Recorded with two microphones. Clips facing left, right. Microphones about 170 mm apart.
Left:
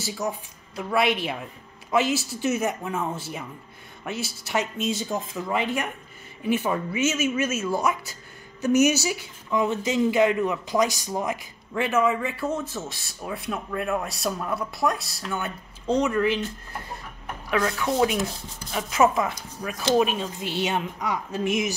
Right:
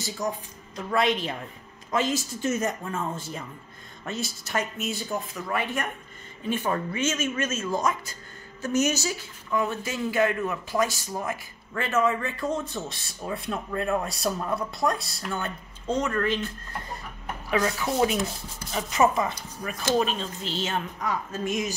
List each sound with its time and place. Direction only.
0.2 s speech: 10° left (ahead or behind)
4.9 s speech: 20° left (ahead or behind)
17.5 s speech: 5° right (ahead or behind); by 21.4 s 15° left (ahead or behind)